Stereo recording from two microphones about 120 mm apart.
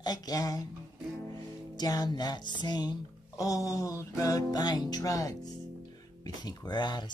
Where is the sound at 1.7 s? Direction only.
35° left (ahead or behind).